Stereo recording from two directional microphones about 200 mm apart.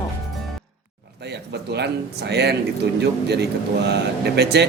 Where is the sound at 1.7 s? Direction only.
55° right (ahead or behind).